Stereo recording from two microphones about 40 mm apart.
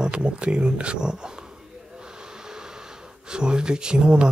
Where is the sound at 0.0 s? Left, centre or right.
Right.